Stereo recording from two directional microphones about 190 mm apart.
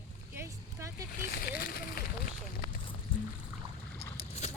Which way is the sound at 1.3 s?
55° left (ahead or behind).